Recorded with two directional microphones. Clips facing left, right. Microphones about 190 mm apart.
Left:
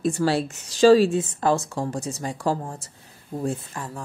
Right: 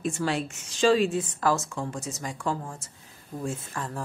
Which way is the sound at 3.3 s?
25° left (ahead or behind).